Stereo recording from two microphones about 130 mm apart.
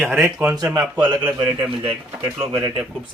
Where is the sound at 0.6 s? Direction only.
30° right (ahead or behind).